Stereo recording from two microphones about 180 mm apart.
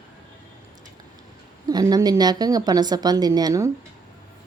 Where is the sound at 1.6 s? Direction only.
20° right (ahead or behind).